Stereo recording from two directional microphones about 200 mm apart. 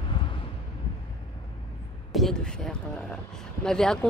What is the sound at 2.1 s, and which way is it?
Speech, centre (ahead or behind).